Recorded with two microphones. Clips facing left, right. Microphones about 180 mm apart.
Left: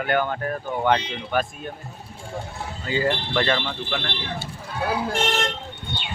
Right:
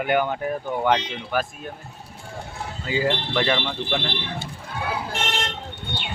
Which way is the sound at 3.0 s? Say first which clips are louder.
Even; 5° right (ahead or behind).